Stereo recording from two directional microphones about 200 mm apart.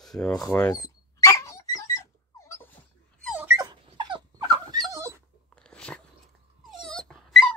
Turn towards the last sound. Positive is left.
turn(degrees=0)  # may be behind; listen again after turning